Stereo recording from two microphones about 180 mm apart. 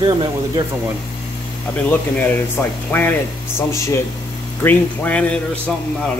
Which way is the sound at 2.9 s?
10° left (ahead or behind).